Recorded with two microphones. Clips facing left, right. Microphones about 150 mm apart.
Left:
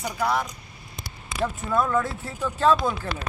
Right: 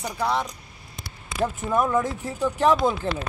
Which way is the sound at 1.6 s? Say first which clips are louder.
Right 1 dB; 20° right (ahead or behind).